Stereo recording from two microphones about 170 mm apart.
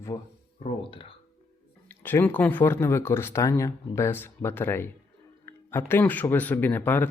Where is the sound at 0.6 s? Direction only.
30° left (ahead or behind).